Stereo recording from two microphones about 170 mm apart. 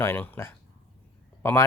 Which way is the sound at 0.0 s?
15° left (ahead or behind).